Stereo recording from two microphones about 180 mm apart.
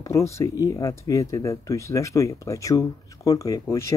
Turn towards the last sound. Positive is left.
turn(degrees=15)  # may be behind; listen again after turning